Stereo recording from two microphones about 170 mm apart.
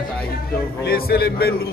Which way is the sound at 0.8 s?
65° left (ahead or behind).